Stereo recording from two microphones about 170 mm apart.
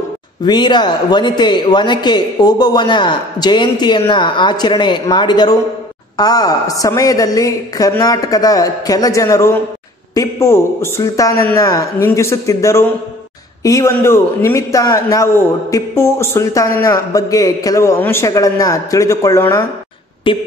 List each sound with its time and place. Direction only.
0.5 s a man's voice: 25° left (ahead or behind)
20.3 s a man's voice: 30° left (ahead or behind)